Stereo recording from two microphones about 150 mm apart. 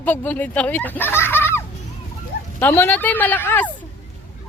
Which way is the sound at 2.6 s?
15° left (ahead or behind).